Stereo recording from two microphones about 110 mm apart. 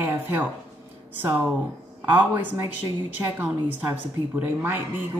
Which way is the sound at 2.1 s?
15° right (ahead or behind).